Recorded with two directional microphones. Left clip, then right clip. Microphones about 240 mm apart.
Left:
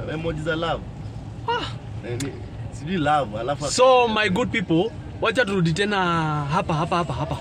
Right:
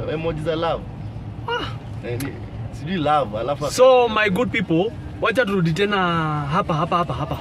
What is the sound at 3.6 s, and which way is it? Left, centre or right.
A man's voice, centre.